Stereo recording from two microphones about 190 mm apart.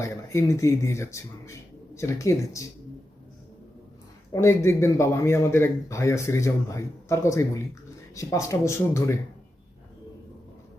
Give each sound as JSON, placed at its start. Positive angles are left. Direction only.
{"t": 0.0, "sound": "a man's voice", "side_deg": 15}
{"t": 4.3, "sound": "a man's voice", "side_deg": 15}